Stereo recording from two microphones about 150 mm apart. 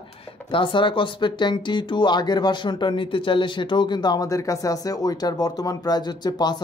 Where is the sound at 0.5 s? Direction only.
35° left (ahead or behind).